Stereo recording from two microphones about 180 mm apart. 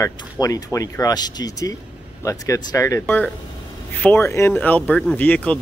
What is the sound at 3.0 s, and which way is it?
Speech, 5° left (ahead or behind).